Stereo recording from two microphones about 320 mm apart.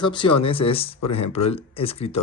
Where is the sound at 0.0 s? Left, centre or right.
Centre.